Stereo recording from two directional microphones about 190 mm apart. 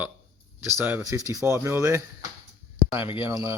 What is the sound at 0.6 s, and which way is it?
Speech, 10° right (ahead or behind).